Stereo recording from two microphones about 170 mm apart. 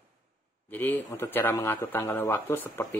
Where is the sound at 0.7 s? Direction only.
10° left (ahead or behind).